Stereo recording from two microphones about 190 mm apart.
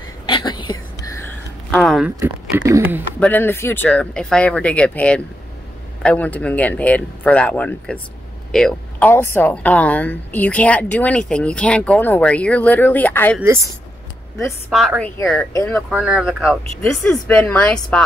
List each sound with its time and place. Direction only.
0.3 s a sound: 25° left (ahead or behind)
1.7 s speech: centre (ahead or behind)
2.0 s speech: 15° right (ahead or behind)
3.2 s a woman's voice: 10° left (ahead or behind)
14.7 s speech: centre (ahead or behind)
15.5 s a woman's voice: 10° left (ahead or behind)
15.9 s speech: 5° right (ahead or behind)
16.8 s a woman's voice: 10° left (ahead or behind)